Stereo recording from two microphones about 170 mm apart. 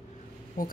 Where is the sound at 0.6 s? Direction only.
55° left (ahead or behind).